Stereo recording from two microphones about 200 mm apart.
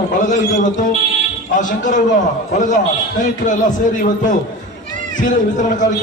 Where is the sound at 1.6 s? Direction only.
40° left (ahead or behind).